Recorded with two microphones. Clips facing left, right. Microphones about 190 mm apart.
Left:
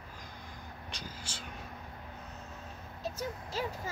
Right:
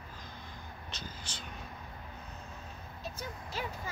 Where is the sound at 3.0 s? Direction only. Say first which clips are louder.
Left 5 dB; 40° left (ahead or behind).